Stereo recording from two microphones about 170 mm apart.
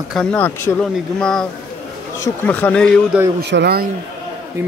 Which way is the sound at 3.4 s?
80° right.